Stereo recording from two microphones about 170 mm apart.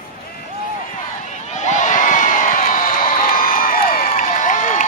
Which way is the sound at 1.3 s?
45° left (ahead or behind).